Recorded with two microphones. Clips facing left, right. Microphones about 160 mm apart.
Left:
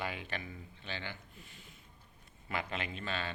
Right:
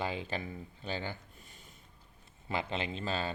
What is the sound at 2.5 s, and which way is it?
Speech, 30° right (ahead or behind).